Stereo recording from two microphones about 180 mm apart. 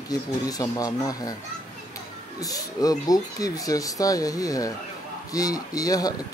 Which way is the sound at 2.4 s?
20° left (ahead or behind).